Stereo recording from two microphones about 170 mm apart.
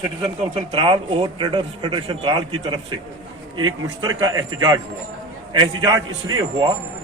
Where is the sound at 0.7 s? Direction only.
30° right (ahead or behind).